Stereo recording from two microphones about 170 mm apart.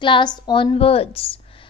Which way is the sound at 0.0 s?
25° left (ahead or behind).